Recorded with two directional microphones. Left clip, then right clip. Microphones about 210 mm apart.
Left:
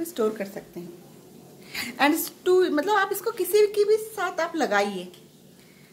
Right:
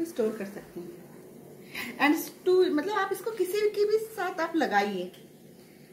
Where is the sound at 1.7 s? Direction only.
55° left (ahead or behind).